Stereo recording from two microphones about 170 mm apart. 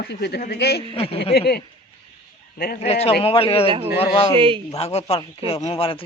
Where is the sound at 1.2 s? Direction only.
70° left (ahead or behind).